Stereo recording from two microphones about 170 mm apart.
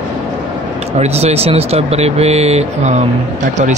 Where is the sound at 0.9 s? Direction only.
40° right (ahead or behind).